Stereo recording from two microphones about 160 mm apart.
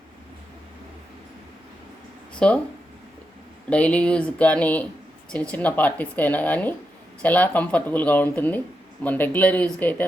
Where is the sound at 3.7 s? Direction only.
10° left (ahead or behind).